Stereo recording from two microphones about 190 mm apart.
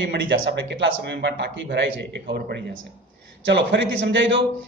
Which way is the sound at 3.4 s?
65° right (ahead or behind).